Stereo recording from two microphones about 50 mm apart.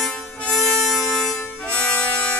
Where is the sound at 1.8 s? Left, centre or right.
Left.